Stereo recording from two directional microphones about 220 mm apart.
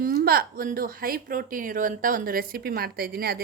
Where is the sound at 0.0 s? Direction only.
45° right (ahead or behind).